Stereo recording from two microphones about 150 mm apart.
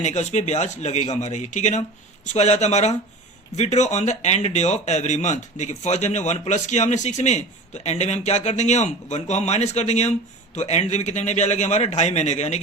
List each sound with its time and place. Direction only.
0.0 s speech: 50° left (ahead or behind)